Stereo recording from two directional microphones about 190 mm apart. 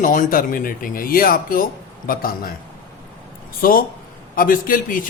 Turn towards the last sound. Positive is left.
turn(degrees=50)  # may be behind; listen again after turning